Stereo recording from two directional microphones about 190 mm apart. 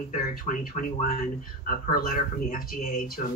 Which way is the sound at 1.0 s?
45° left (ahead or behind).